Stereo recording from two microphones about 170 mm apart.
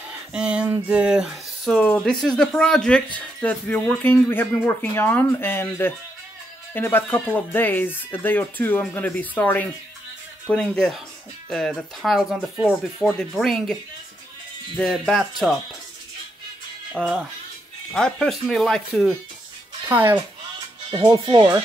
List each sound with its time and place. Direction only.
0.3 s speech: 5° right (ahead or behind)
14.8 s speech: centre (ahead or behind)
16.9 s speech: centre (ahead or behind)
19.9 s speech: 10° right (ahead or behind)
20.9 s speech: 25° right (ahead or behind)